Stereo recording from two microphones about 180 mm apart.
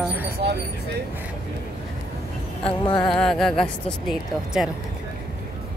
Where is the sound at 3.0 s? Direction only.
5° left (ahead or behind).